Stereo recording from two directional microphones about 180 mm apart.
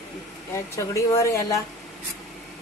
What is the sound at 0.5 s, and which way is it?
Speech, 15° left (ahead or behind).